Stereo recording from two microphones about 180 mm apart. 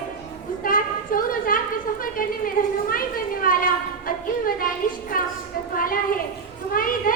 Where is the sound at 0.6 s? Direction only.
50° left (ahead or behind).